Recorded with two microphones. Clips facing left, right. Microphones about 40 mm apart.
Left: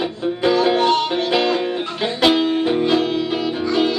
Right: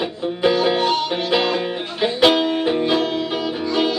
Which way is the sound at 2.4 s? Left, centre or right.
Centre.